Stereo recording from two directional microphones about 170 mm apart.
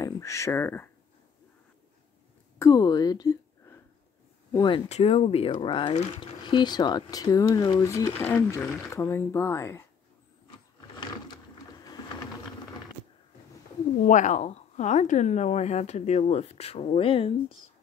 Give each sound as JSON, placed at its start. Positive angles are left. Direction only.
{"t": 0.0, "sound": "speech", "side_deg": 20}
{"t": 2.6, "sound": "speech", "side_deg": 20}
{"t": 4.8, "sound": "speech", "side_deg": 40}
{"t": 11.0, "sound": "a sound", "side_deg": 25}
{"t": 14.0, "sound": "a woman's voice", "side_deg": 45}